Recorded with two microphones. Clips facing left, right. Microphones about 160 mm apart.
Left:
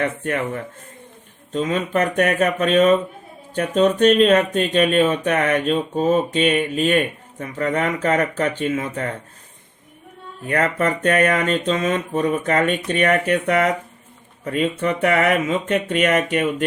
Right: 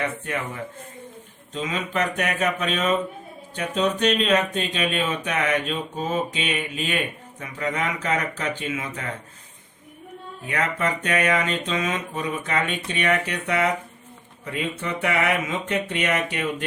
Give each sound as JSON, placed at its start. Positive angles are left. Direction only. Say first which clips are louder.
{"t": 1.5, "sound": "speech", "louder": "left 6 dB", "side_deg": 45}
{"t": 10.4, "sound": "speech", "louder": "left 6 dB", "side_deg": 50}